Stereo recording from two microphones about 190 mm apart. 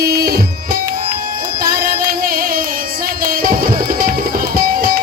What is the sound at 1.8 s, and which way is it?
Music, 50° right (ahead or behind).